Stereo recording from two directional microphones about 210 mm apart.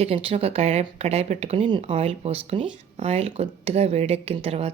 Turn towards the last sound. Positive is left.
turn(degrees=-30)  # may be behind; listen again after turning